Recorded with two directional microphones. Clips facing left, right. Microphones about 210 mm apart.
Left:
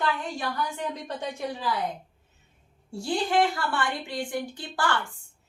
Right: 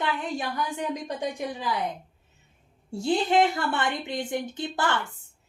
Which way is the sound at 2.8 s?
20° right (ahead or behind).